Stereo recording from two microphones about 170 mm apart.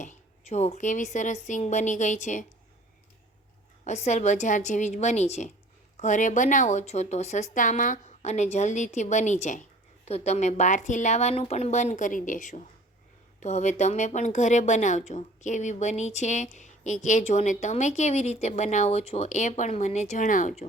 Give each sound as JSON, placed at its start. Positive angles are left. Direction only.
{"t": 0.0, "sound": "speech", "side_deg": 45}
{"t": 3.8, "sound": "speech", "side_deg": 40}